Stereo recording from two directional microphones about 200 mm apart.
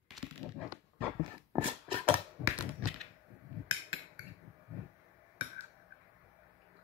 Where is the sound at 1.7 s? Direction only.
25° right (ahead or behind).